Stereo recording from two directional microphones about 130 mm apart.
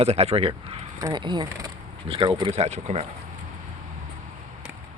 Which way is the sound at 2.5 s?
55° right (ahead or behind).